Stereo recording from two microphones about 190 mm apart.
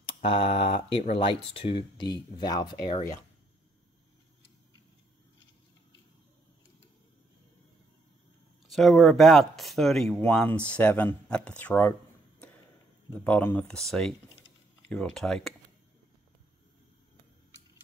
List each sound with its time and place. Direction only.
0.2 s speech: 30° left (ahead or behind)
8.6 s speech: centre (ahead or behind)
13.2 s speech: 10° left (ahead or behind)